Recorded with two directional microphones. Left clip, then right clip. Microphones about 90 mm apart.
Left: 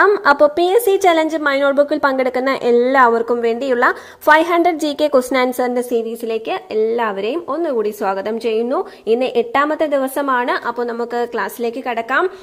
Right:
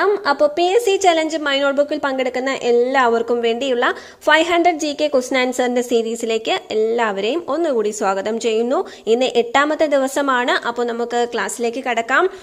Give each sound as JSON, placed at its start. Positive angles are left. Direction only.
{"t": 0.0, "sound": "a woman's voice", "side_deg": 5}
{"t": 2.1, "sound": "a woman's voice", "side_deg": 0}
{"t": 2.6, "sound": "a woman's voice", "side_deg": 20}
{"t": 2.9, "sound": "a woman's voice", "side_deg": 0}
{"t": 5.7, "sound": "a woman's voice", "side_deg": -20}